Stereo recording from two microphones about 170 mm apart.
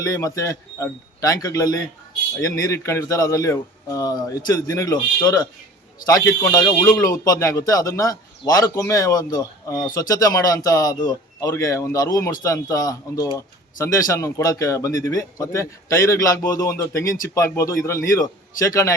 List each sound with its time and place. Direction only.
0.0 s a man's voice: 20° left (ahead or behind)